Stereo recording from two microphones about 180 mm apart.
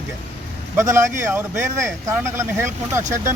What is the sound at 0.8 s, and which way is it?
Speech, 15° right (ahead or behind).